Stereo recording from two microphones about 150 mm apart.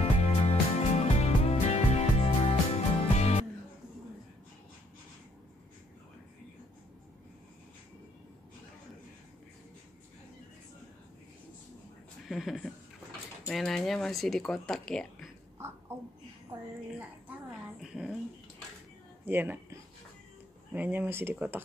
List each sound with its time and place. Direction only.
0.0 s music: 40° left (ahead or behind)
12.3 s speech: centre (ahead or behind)
16.5 s speech: 15° right (ahead or behind)
17.8 s a sound: centre (ahead or behind)
19.2 s speech: 15° right (ahead or behind)